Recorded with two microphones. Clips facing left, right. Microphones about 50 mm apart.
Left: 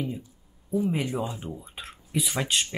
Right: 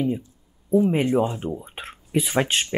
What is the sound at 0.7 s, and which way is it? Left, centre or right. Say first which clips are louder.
Speech: right 8 dB; right.